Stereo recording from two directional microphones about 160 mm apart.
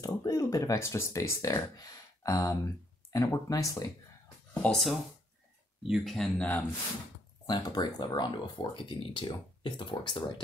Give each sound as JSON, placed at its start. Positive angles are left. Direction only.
{"t": 0.0, "sound": "speech", "side_deg": 20}
{"t": 4.6, "sound": "speech", "side_deg": 0}
{"t": 7.4, "sound": "speech", "side_deg": 25}